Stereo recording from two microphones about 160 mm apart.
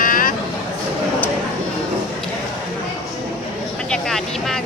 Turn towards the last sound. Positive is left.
turn(degrees=5)  # may be behind; listen again after turning